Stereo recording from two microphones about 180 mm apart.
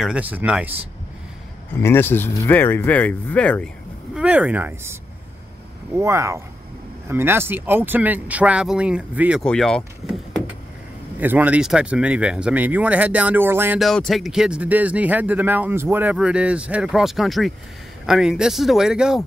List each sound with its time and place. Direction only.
0.0 s speech: 5° right (ahead or behind)
1.7 s speech: 15° left (ahead or behind)
4.1 s speech: 5° right (ahead or behind)
5.9 s speech: 15° right (ahead or behind)
9.4 s speech: 5° left (ahead or behind)
11.1 s speech: 10° right (ahead or behind)
13.7 s speech: centre (ahead or behind)